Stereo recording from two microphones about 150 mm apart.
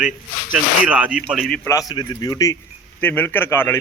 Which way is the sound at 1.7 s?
25° left (ahead or behind).